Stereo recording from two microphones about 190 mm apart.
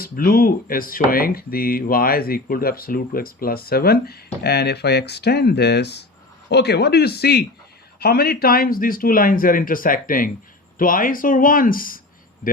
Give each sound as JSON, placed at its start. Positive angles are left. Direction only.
{"t": 0.0, "sound": "speech", "side_deg": 50}